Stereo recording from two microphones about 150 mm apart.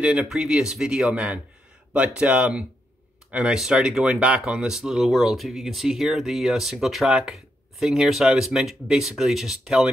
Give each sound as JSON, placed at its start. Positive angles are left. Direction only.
{"t": 0.0, "sound": "speech", "side_deg": -5}